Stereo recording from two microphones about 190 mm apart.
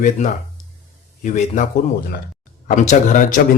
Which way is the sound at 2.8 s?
40° left (ahead or behind).